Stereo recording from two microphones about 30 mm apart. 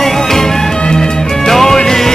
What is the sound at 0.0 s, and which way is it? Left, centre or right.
Music, centre.